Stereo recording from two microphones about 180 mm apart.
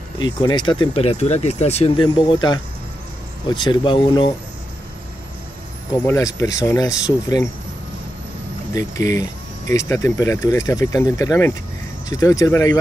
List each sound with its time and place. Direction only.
0.2 s speech: 25° left (ahead or behind)
5.9 s speech: 15° left (ahead or behind)
8.7 s speech: 20° left (ahead or behind)